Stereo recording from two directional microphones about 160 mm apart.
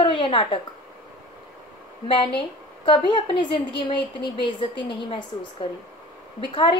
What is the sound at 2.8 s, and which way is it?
A woman's voice, 30° left (ahead or behind).